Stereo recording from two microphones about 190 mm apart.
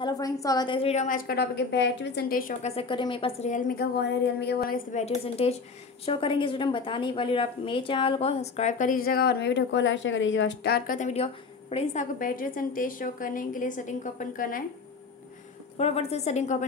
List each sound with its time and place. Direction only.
0.0 s a woman's voice: 20° left (ahead or behind); by 2.5 s 50° left (ahead or behind)
2.6 s speech: 30° left (ahead or behind); by 4.7 s 60° left (ahead or behind)
4.9 s a woman's voice: 35° left (ahead or behind)
15.8 s speech: 35° left (ahead or behind)